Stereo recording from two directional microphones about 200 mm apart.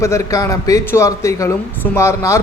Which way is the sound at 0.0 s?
15° left (ahead or behind).